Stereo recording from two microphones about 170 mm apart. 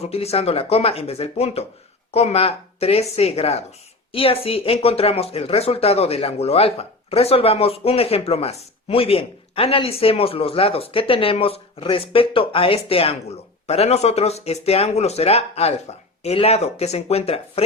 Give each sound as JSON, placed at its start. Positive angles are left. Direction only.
{"t": 0.0, "sound": "speech", "side_deg": 35}